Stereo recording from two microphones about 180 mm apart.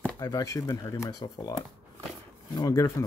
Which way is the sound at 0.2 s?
20° left (ahead or behind).